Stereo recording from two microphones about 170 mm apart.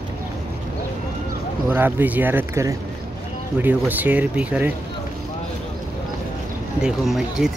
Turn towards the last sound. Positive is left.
turn(degrees=0)  # may be behind; listen again after turning